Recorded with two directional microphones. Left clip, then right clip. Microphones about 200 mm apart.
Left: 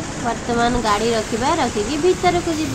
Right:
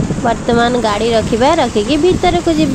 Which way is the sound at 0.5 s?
35° right (ahead or behind).